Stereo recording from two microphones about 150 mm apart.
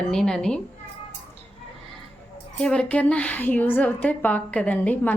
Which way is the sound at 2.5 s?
5° left (ahead or behind).